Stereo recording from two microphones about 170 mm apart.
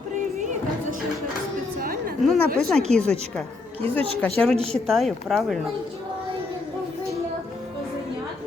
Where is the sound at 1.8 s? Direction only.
55° right (ahead or behind).